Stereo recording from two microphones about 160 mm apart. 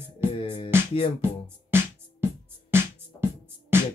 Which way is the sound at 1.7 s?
15° right (ahead or behind).